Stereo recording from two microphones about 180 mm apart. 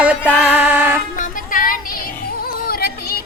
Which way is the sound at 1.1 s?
50° left (ahead or behind).